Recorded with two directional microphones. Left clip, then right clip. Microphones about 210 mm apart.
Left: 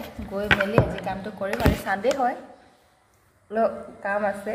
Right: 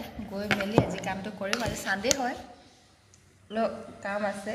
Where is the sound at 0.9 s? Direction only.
5° left (ahead or behind).